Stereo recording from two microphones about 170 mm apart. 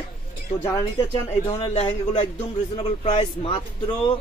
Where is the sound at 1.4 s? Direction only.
35° left (ahead or behind).